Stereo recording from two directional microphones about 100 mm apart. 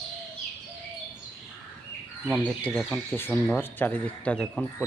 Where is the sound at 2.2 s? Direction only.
15° left (ahead or behind).